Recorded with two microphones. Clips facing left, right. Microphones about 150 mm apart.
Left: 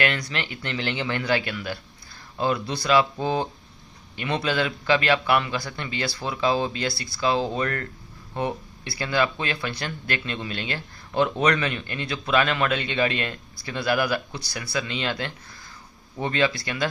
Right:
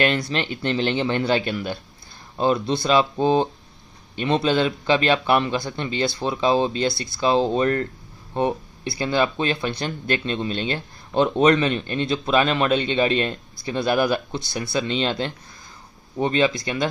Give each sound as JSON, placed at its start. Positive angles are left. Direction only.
{"t": 0.0, "sound": "speech", "side_deg": -25}